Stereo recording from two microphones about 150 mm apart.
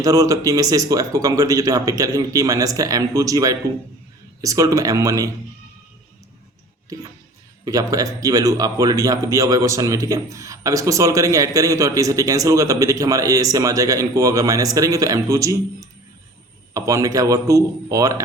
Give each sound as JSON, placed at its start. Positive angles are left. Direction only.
{"t": 0.0, "sound": "speech", "side_deg": -20}
{"t": 7.6, "sound": "speech", "side_deg": -25}